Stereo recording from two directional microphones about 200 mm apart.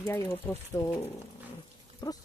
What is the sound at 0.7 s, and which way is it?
Speech, 10° left (ahead or behind).